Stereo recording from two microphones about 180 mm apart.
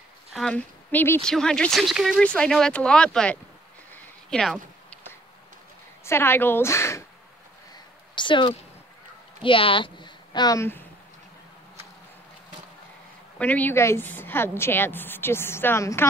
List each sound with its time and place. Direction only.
0.3 s speech: 5° left (ahead or behind)
3.9 s a sound: 5° left (ahead or behind)
6.0 s a woman's voice: 15° left (ahead or behind)
8.1 s a sound: 25° left (ahead or behind)
9.4 s a woman's voice: 30° left (ahead or behind); by 10.9 s 15° left (ahead or behind)
13.4 s a woman's voice: 10° left (ahead or behind)